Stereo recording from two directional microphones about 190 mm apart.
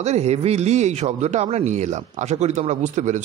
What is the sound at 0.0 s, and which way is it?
A man's voice, 35° right (ahead or behind).